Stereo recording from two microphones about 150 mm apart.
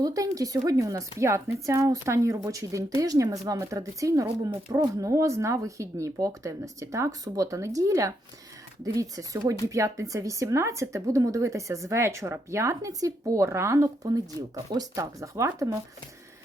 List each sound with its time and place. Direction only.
0.0 s speech: 25° right (ahead or behind)